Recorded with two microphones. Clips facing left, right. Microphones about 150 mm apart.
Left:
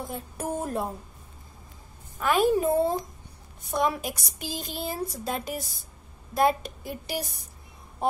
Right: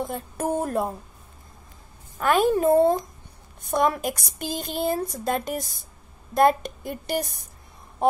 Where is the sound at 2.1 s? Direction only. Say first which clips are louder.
Right 2 dB; 45° right (ahead or behind).